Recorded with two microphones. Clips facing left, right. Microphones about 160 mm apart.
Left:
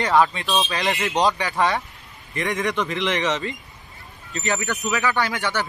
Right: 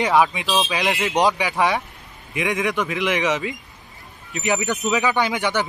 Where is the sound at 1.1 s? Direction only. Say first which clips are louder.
Right 2 dB; 20° right (ahead or behind).